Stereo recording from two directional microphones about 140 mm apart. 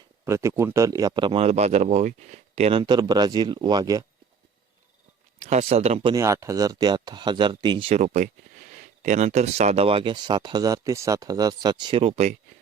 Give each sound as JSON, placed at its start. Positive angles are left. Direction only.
{"t": 0.3, "sound": "speech", "side_deg": -20}
{"t": 2.8, "sound": "speech", "side_deg": -30}
{"t": 5.4, "sound": "speech", "side_deg": -55}
{"t": 6.1, "sound": "speech", "side_deg": -20}
{"t": 8.0, "sound": "speech", "side_deg": -65}